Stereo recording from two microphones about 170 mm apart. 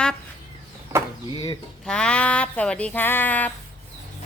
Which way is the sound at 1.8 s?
5° left (ahead or behind).